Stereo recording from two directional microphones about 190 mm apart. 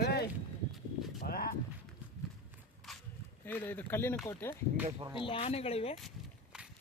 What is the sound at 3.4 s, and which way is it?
Speech, 10° left (ahead or behind).